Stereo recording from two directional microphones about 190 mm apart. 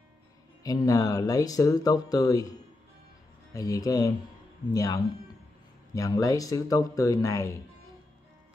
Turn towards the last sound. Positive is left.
turn(degrees=15)  # may be behind; listen again after turning